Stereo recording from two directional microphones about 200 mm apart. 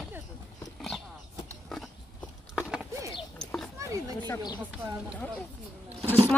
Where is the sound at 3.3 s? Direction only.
Centre (ahead or behind).